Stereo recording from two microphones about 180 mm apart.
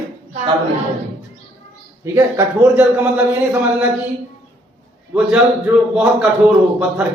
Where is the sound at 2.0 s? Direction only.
15° right (ahead or behind).